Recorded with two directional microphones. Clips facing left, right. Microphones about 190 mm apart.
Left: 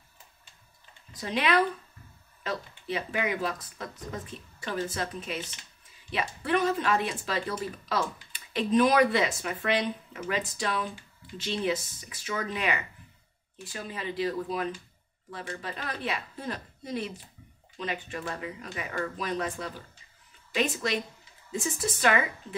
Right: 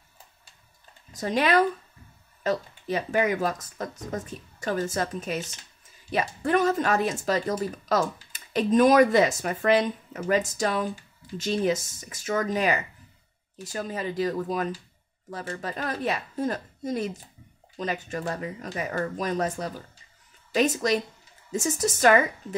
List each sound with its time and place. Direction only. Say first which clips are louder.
1.1 s speech: right 4 dB; 45° right (ahead or behind)